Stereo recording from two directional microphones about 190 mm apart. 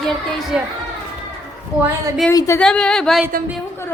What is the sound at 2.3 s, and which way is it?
Speech, 20° left (ahead or behind).